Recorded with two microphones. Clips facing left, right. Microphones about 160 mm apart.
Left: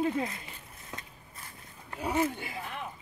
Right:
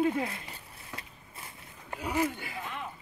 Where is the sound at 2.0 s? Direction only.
30° left (ahead or behind).